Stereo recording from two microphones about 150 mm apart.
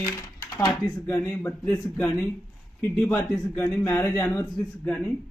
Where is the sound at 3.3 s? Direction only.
15° left (ahead or behind).